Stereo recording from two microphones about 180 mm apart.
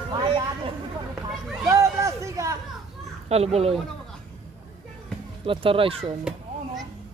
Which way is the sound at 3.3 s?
35° right (ahead or behind).